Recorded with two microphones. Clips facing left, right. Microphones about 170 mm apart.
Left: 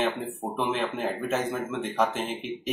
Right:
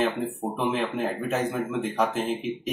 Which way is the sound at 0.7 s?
Centre (ahead or behind).